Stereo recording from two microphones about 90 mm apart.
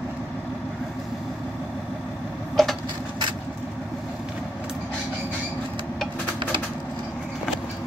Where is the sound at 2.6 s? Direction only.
Centre (ahead or behind).